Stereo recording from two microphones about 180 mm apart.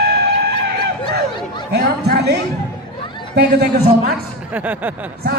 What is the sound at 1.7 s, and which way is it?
Speech, 65° right (ahead or behind).